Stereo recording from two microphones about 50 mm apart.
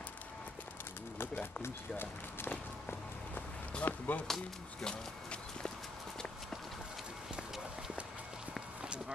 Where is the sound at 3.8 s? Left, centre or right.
Left.